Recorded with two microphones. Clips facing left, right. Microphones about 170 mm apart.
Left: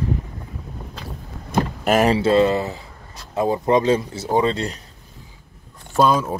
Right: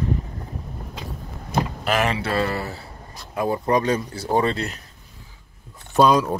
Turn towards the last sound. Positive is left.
turn(degrees=5)  # may be behind; listen again after turning